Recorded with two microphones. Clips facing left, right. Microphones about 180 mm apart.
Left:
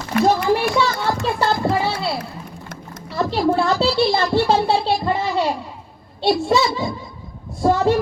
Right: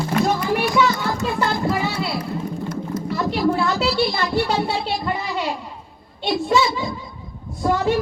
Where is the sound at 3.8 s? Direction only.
30° left (ahead or behind).